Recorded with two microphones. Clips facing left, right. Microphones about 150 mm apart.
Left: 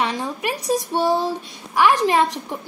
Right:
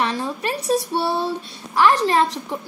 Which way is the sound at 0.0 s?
15° left (ahead or behind).